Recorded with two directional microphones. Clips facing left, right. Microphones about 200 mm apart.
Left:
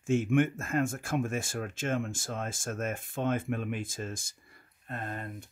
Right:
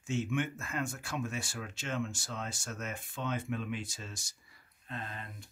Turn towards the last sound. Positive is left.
turn(degrees=50)  # may be behind; listen again after turning